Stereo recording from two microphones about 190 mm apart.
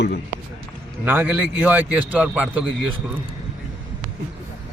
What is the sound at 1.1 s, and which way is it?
A man's voice, 10° right (ahead or behind).